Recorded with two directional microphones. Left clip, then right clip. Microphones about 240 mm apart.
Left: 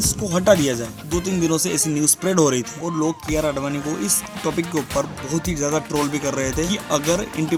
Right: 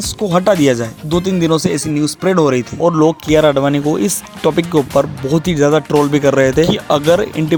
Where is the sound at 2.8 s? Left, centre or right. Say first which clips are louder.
Right 14 dB; right.